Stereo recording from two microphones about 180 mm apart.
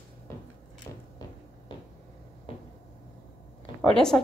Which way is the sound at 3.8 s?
5° left (ahead or behind).